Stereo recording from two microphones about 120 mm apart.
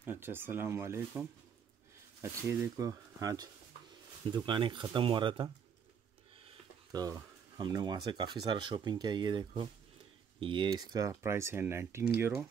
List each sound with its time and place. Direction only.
0.0 s speech: 20° right (ahead or behind)
2.4 s speech: 25° right (ahead or behind)
4.3 s speech: 40° right (ahead or behind)
6.9 s speech: 30° right (ahead or behind)